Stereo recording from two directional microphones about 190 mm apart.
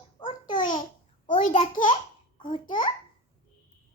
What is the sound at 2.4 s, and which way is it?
Babbling, 25° left (ahead or behind).